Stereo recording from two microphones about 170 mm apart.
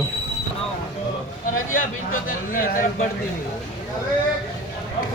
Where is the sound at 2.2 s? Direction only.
55° left (ahead or behind).